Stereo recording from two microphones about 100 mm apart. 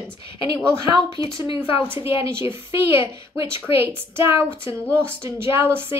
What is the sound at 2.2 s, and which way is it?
Speech, 25° right (ahead or behind).